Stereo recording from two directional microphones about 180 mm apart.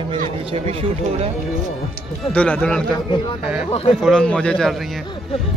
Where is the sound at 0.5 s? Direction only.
30° right (ahead or behind).